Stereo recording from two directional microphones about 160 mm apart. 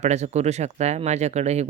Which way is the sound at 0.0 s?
45° right (ahead or behind).